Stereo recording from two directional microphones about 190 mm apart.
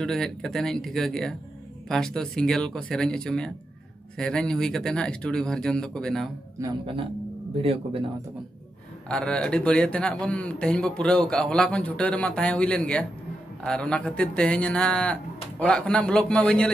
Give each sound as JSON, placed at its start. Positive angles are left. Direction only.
{"t": 0.0, "sound": "a man's voice", "side_deg": 5}
{"t": 7.6, "sound": "speech", "side_deg": -30}
{"t": 9.1, "sound": "a man's voice", "side_deg": 5}